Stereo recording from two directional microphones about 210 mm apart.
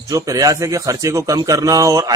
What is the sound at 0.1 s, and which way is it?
A man's voice, 15° right (ahead or behind).